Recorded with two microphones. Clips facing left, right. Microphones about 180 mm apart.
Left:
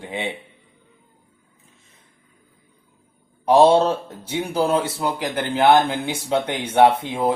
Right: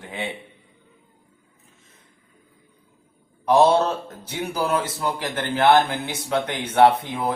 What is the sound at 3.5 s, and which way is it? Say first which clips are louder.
Speech: left 3 dB; 30° left (ahead or behind).